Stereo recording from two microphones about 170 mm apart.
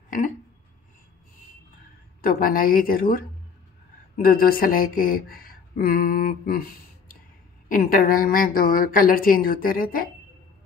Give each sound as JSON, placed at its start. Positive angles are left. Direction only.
{"t": 2.2, "sound": "a woman's voice", "side_deg": 55}